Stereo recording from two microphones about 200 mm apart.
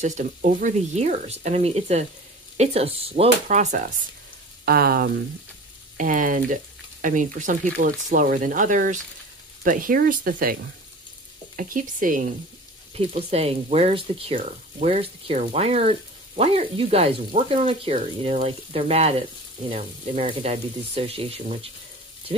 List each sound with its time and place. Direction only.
0.0 s speech: 40° right (ahead or behind)
12.9 s speech: 30° right (ahead or behind)